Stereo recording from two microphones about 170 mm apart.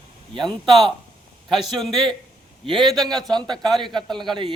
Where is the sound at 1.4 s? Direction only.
Centre (ahead or behind).